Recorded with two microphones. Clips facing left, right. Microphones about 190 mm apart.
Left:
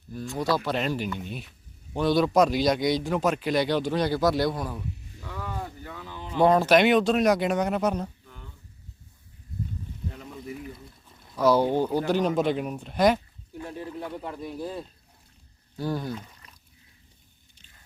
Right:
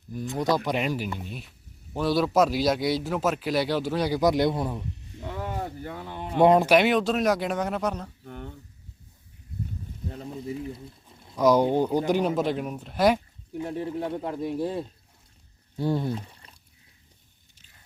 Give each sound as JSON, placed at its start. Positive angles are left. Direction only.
{"t": 0.1, "sound": "a man's voice", "side_deg": -20}
{"t": 6.1, "sound": "a sound", "side_deg": -55}
{"t": 6.4, "sound": "speech", "side_deg": -20}
{"t": 6.7, "sound": "a man's voice", "side_deg": 0}
{"t": 8.2, "sound": "a sound", "side_deg": -60}
{"t": 10.1, "sound": "a sound", "side_deg": -30}
{"t": 11.3, "sound": "speech", "side_deg": -15}
{"t": 12.4, "sound": "a man's voice", "side_deg": 0}
{"t": 13.6, "sound": "speech", "side_deg": -25}